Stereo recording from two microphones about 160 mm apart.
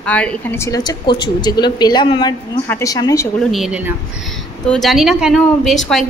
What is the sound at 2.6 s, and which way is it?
Speech, 15° left (ahead or behind).